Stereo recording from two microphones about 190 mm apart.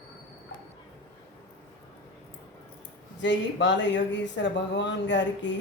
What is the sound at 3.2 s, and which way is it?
Speech, 70° left (ahead or behind).